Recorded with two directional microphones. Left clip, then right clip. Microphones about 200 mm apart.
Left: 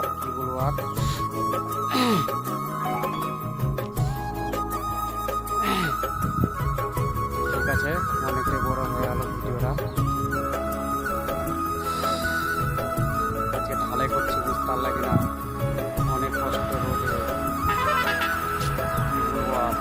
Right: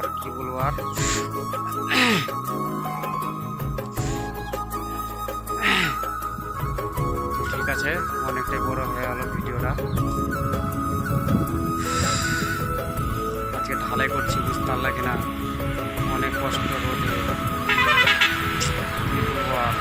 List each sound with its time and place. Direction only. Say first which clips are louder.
1.9 s music: right 4 dB; centre (ahead or behind)
5.5 s music: right 5 dB; 5° left (ahead or behind)
7.6 s music: right 2 dB; centre (ahead or behind)
11.9 s music: right 2 dB; 5° left (ahead or behind)
14.0 s speech: left 1 dB; centre (ahead or behind)
16.1 s speech: right 2 dB; centre (ahead or behind)
17.7 s music: right 6 dB; 35° left (ahead or behind)